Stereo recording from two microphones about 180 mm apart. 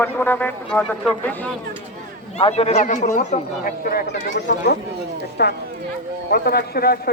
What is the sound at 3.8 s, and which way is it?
A man's voice, 65° left (ahead or behind).